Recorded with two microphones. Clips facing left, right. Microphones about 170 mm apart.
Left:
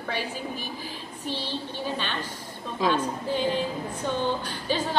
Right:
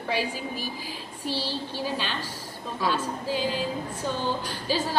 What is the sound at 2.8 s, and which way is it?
Speech, 20° left (ahead or behind).